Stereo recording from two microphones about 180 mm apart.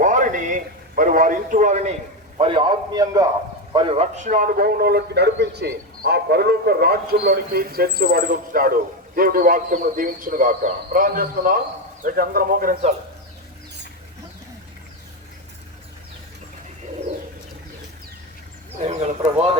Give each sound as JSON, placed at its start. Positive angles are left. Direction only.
{"t": 0.0, "sound": "a man's voice", "side_deg": -45}
{"t": 2.4, "sound": "a man's voice", "side_deg": -25}
{"t": 18.8, "sound": "speech", "side_deg": -40}